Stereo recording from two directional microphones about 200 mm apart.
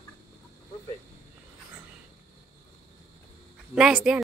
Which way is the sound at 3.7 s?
Centre (ahead or behind).